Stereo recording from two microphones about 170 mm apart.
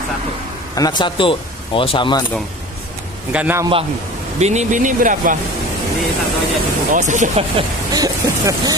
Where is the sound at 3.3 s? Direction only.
10° right (ahead or behind).